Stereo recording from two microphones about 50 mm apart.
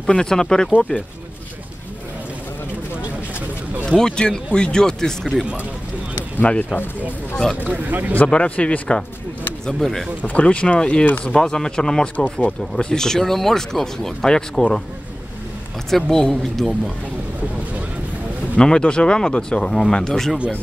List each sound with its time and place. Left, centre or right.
0.0 s speech: centre
4.0 s speech: centre
6.4 s speech: left
7.6 s speech: right
8.3 s speech: left
9.8 s a woman's voice: centre
10.2 s speech: left
15.9 s a woman's voice: centre
18.6 s speech: centre